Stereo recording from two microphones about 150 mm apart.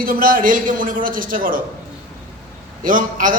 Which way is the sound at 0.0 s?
70° right (ahead or behind).